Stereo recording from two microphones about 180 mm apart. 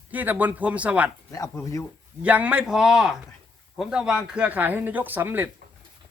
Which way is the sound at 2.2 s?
10° right (ahead or behind).